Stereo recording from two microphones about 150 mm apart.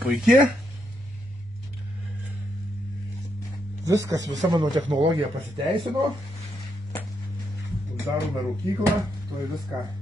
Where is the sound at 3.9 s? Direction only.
20° right (ahead or behind).